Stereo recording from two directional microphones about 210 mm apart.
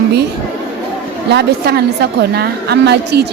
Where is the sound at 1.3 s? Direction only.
50° right (ahead or behind).